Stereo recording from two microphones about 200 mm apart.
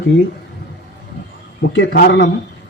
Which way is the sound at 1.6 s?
50° left (ahead or behind).